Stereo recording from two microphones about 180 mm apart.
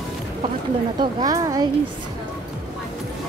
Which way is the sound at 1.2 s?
20° right (ahead or behind).